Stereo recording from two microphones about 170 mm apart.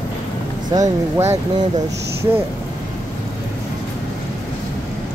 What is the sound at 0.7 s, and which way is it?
Speech, 20° right (ahead or behind).